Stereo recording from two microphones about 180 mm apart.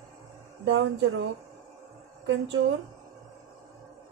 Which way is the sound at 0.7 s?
90° right.